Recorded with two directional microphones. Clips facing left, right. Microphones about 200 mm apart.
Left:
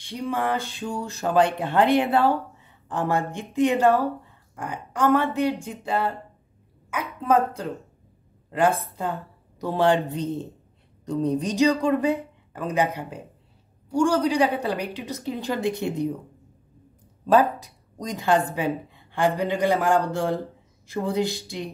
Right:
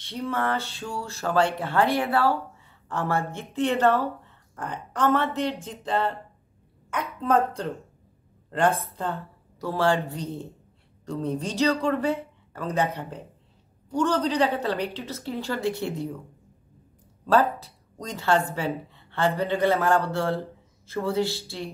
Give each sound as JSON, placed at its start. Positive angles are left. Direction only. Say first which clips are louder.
{"t": 0.0, "sound": "a woman's voice", "louder": "left 1 dB", "side_deg": 15}
{"t": 17.3, "sound": "a woman's voice", "louder": "left 2 dB", "side_deg": 15}